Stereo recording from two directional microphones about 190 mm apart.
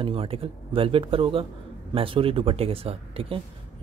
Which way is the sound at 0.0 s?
30° right (ahead or behind).